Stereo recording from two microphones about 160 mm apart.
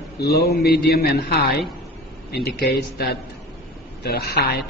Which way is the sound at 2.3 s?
85° left.